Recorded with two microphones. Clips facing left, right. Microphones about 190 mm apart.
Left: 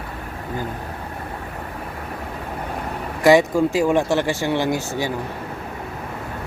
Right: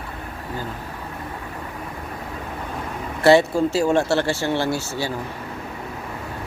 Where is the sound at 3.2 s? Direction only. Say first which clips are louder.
Left 1 dB; 15° left (ahead or behind).